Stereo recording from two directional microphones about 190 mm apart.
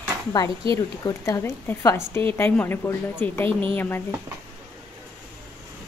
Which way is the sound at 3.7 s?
10° left (ahead or behind).